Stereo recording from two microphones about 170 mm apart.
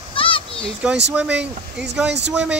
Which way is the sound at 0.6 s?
5° right (ahead or behind).